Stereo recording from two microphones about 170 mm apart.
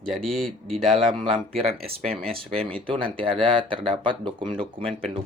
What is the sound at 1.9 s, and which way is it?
Speech, 35° right (ahead or behind).